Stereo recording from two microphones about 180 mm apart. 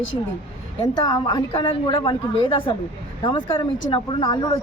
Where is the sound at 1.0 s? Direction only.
25° left (ahead or behind).